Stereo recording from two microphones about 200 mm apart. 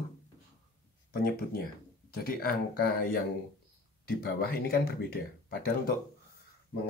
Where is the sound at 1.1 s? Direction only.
50° left (ahead or behind).